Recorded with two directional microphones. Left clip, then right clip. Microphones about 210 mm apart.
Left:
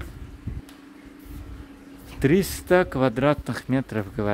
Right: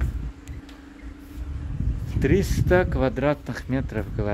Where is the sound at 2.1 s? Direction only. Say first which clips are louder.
Left 1 dB; 25° left (ahead or behind).